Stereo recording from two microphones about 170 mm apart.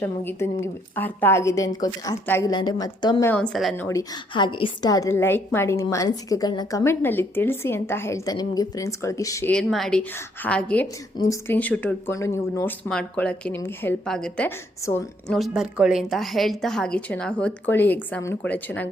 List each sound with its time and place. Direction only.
0.0 s a woman's voice: 15° left (ahead or behind)
3.2 s a woman's voice: 5° left (ahead or behind)
3.8 s a woman's voice: 15° left (ahead or behind)
4.4 s a woman's voice: 30° left (ahead or behind)
9.5 s a woman's voice: 5° left (ahead or behind)